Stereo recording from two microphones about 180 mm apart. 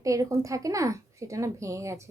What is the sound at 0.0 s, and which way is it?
Speech, 15° right (ahead or behind).